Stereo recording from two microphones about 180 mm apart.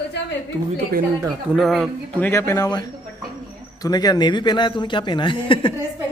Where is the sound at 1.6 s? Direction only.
Centre (ahead or behind); by 5.8 s 30° left (ahead or behind).